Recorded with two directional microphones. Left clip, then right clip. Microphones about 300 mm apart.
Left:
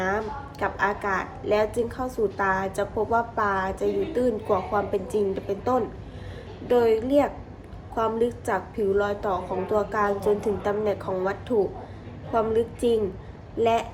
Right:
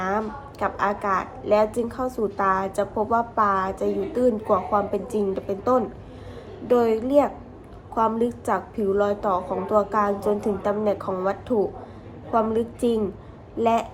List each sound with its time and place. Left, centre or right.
0.6 s a woman's voice: centre